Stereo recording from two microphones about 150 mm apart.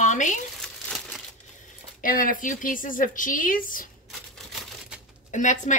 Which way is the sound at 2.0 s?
65° left (ahead or behind).